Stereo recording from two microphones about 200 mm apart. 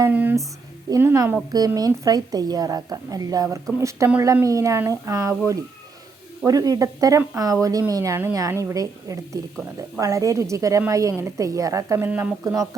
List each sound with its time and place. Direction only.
0.0 s a sound: 10° right (ahead or behind)
0.9 s a woman's voice: 15° right (ahead or behind)
6.4 s a woman's voice: 15° right (ahead or behind)